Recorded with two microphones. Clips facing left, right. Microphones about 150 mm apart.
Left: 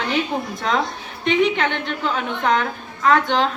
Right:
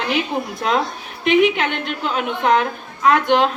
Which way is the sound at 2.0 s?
15° right (ahead or behind).